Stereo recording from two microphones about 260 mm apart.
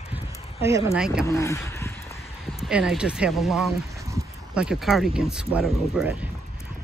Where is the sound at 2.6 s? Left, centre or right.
Centre.